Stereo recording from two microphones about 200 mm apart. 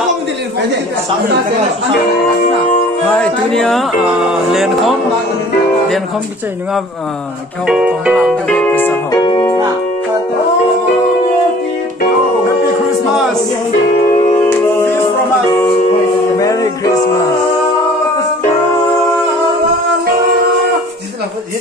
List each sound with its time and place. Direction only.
3.1 s speech: 5° left (ahead or behind)
7.6 s music: 5° right (ahead or behind)
9.1 s music: 20° left (ahead or behind)
16.3 s music: 15° left (ahead or behind)